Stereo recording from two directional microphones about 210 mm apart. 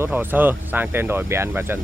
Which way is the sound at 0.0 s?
10° right (ahead or behind).